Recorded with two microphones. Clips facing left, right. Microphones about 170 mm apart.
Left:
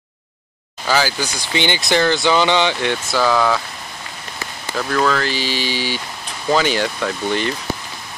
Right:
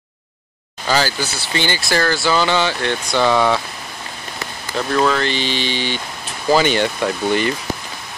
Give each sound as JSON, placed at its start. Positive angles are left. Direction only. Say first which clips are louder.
{"t": 0.9, "sound": "a sound", "louder": "even", "side_deg": 10}
{"t": 1.5, "sound": "speech", "louder": "left 2 dB", "side_deg": 20}
{"t": 3.1, "sound": "speech", "louder": "right 2 dB", "side_deg": 5}
{"t": 4.7, "sound": "speech", "louder": "right 1 dB", "side_deg": -5}
{"t": 5.2, "sound": "a sound", "louder": "right 1 dB", "side_deg": 5}
{"t": 6.5, "sound": "speech", "louder": "right 2 dB", "side_deg": 0}